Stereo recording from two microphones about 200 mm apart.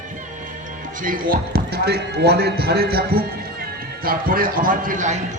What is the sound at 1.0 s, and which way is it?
Speech, 45° right (ahead or behind).